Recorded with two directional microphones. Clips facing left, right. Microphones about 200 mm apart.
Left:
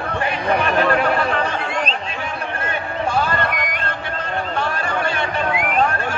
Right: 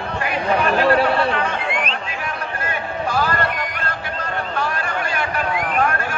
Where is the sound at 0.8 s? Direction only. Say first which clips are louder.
Right 2 dB; 30° right (ahead or behind).